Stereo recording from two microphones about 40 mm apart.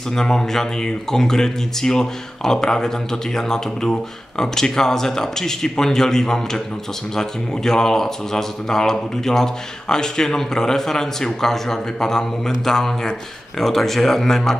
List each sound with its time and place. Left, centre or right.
0.1 s speech: centre